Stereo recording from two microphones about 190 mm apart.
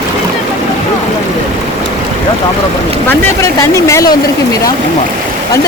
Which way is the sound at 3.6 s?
15° left (ahead or behind).